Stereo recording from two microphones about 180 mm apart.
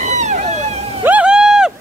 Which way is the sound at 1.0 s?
5° right (ahead or behind).